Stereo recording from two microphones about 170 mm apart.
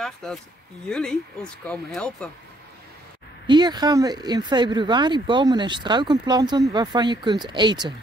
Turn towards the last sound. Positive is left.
turn(degrees=-25)  # may be behind; listen again after turning